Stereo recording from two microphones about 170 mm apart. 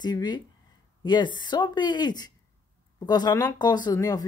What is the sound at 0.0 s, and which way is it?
Speech, 25° left (ahead or behind).